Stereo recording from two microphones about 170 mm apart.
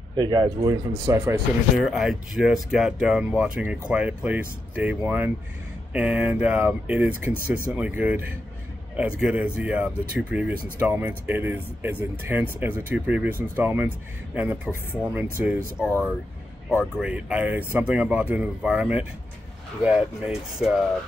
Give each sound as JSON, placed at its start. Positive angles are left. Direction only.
{"t": 0.1, "sound": "speech", "side_deg": -25}
{"t": 1.8, "sound": "speech", "side_deg": 0}